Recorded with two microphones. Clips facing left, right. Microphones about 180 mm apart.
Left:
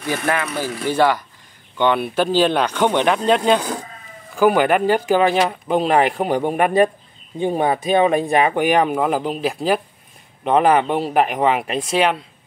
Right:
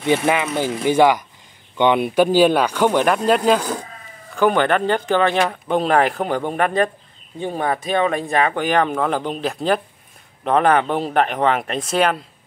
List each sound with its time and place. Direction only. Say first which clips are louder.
0.0 s speech: right 4 dB; 20° right (ahead or behind); by 3.7 s 5° right (ahead or behind)
4.4 s speech: left 2 dB; 10° left (ahead or behind)
6.2 s speech: left 2 dB; 15° left (ahead or behind)